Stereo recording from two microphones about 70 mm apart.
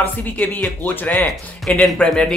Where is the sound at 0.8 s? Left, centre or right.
Left.